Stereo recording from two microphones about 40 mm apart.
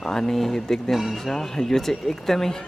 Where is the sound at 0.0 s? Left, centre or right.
Centre.